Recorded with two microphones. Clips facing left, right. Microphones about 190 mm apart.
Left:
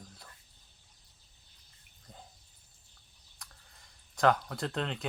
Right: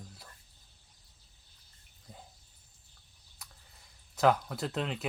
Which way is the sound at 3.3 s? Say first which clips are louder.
Even; 5° right (ahead or behind).